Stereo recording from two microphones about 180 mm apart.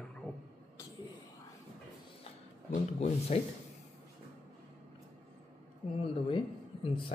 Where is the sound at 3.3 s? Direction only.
30° left (ahead or behind).